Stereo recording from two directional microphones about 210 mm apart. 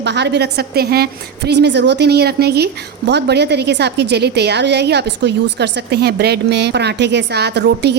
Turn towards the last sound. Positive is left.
turn(degrees=-55)  # may be behind; listen again after turning